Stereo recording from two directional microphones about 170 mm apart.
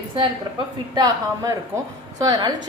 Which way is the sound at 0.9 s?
20° right (ahead or behind).